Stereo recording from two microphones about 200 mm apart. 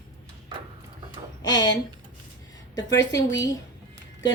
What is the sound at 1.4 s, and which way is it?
A woman's voice, 20° left (ahead or behind).